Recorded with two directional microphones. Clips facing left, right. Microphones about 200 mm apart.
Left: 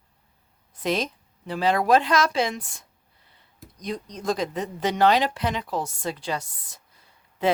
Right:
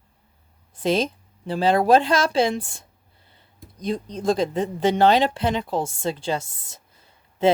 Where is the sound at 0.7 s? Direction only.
30° right (ahead or behind).